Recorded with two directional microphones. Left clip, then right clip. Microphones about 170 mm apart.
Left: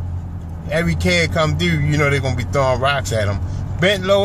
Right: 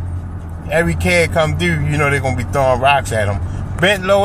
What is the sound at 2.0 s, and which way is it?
Speech, 35° left (ahead or behind).